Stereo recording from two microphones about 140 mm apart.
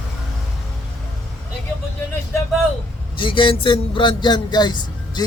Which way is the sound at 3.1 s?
35° left (ahead or behind).